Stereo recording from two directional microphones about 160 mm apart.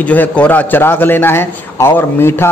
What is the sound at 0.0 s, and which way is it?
A man's voice, 10° left (ahead or behind).